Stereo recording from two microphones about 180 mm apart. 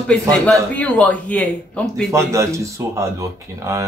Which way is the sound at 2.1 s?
15° right (ahead or behind).